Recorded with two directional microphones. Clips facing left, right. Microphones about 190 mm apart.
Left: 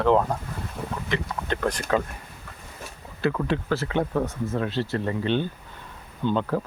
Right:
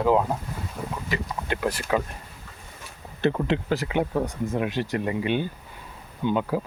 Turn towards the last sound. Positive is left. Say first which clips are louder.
# even
turn(degrees=-10)  # may be behind; listen again after turning